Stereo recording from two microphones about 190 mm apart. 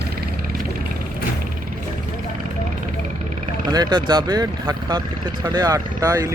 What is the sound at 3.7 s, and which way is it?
Speech, 20° right (ahead or behind).